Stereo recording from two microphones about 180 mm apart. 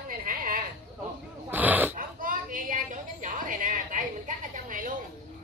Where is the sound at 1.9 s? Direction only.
50° right (ahead or behind).